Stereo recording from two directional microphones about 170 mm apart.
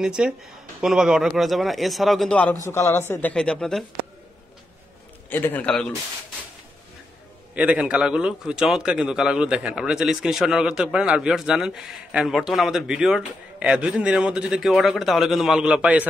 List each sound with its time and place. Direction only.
0.0 s a man's voice: 5° right (ahead or behind)
5.3 s speech: 10° left (ahead or behind)
7.5 s a man's voice: 5° right (ahead or behind)